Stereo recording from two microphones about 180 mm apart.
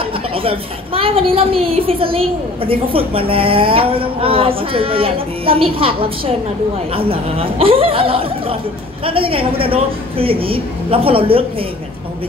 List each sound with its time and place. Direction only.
0.0 s a woman's voice: 30° right (ahead or behind)